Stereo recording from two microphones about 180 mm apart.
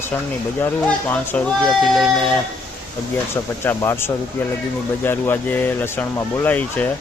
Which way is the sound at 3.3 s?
15° left (ahead or behind).